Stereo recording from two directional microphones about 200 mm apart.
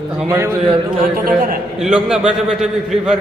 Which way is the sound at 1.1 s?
45° right (ahead or behind).